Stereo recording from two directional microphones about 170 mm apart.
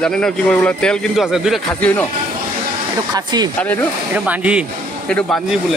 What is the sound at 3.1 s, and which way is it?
Speech, 25° right (ahead or behind).